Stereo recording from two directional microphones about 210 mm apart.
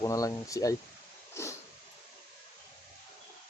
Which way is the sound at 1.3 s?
15° left (ahead or behind).